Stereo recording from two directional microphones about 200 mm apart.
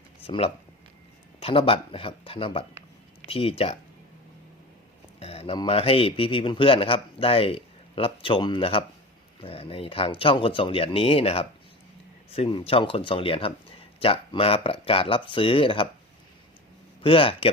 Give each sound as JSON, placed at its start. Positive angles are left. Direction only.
{"t": 0.2, "sound": "speech", "side_deg": 30}
{"t": 5.2, "sound": "speech", "side_deg": 30}
{"t": 17.0, "sound": "speech", "side_deg": 25}